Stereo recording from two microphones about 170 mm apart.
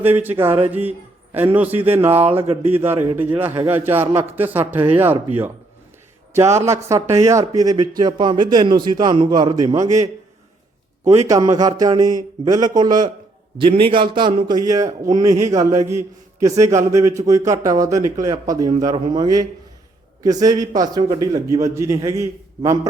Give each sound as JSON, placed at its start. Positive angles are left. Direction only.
{"t": 0.0, "sound": "a man's voice", "side_deg": -10}
{"t": 6.3, "sound": "speech", "side_deg": -15}
{"t": 11.3, "sound": "speech", "side_deg": -20}